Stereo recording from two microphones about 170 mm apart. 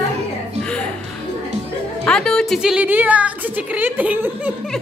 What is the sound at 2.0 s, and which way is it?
A woman's voice, 5° left (ahead or behind).